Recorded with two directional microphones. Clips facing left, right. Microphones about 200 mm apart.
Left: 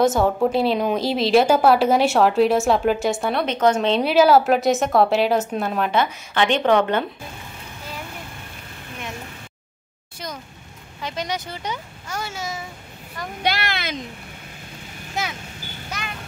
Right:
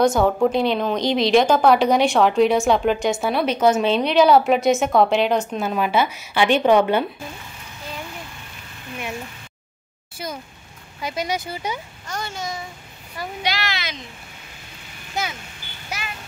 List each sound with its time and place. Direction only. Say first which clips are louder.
0.0 s a woman's voice: right 1 dB; centre (ahead or behind)
4.0 s a woman's voice: left 1 dB; 5° left (ahead or behind)
10.1 s a child's voice: right 2 dB; 5° right (ahead or behind)
12.1 s a woman's voice: even; 5° left (ahead or behind)
13.4 s speech: left 3 dB; 55° left (ahead or behind)
15.2 s speech: right 1 dB; centre (ahead or behind)
15.9 s a sound: right 1 dB; 10° right (ahead or behind)